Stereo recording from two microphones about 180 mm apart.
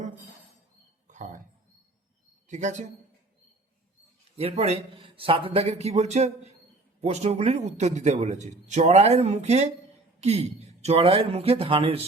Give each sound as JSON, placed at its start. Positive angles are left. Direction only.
{"t": 1.0, "sound": "a sound", "side_deg": -45}
{"t": 2.5, "sound": "a man's voice", "side_deg": -40}
{"t": 4.4, "sound": "a man's voice", "side_deg": -35}